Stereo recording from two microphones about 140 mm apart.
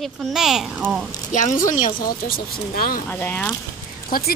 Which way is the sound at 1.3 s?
65° left (ahead or behind).